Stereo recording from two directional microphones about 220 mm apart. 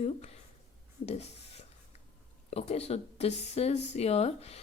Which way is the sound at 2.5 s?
30° left (ahead or behind).